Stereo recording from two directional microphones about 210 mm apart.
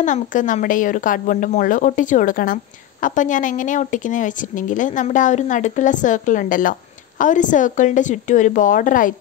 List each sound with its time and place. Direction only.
0.0 s a woman's voice: 35° left (ahead or behind)